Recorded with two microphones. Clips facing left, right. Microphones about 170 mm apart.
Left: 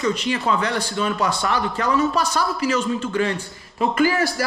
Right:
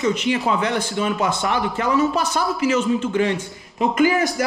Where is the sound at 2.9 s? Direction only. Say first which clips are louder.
Right 2 dB; 20° right (ahead or behind).